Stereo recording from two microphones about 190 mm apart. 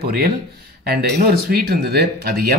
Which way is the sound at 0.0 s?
55° right (ahead or behind).